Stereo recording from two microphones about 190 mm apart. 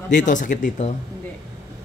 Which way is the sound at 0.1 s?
40° left (ahead or behind).